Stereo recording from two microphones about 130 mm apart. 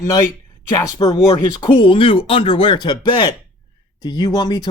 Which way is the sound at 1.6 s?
35° left (ahead or behind).